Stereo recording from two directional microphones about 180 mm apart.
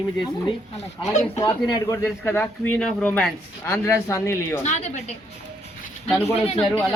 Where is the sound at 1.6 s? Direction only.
20° left (ahead or behind).